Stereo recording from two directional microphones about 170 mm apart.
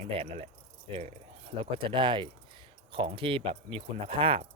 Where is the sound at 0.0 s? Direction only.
35° right (ahead or behind).